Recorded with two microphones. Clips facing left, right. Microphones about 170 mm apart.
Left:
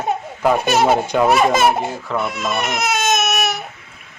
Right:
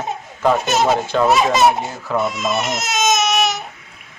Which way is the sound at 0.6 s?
60° left (ahead or behind).